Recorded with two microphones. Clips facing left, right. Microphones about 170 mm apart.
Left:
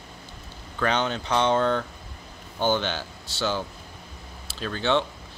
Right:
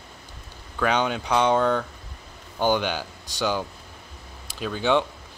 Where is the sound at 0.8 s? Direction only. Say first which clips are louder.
Right 2 dB; 10° right (ahead or behind).